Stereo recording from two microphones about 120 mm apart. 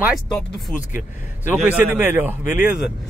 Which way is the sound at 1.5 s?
15° right (ahead or behind).